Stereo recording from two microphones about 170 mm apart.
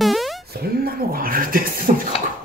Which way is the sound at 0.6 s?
60° right (ahead or behind).